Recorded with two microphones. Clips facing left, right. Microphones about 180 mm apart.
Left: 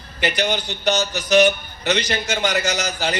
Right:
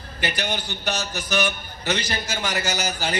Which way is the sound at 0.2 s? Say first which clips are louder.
Left 6 dB; 70° left (ahead or behind).